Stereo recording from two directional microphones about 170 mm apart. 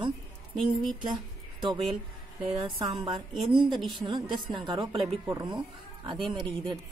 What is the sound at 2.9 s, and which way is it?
Speech, 25° right (ahead or behind).